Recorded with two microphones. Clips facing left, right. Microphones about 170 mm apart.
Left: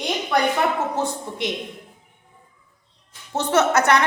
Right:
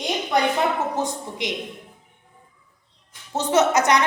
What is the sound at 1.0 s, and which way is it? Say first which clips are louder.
Speech: left 1 dB; 15° right (ahead or behind).